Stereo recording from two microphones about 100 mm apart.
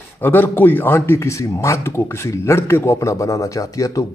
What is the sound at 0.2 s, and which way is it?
A man's voice, 20° left (ahead or behind).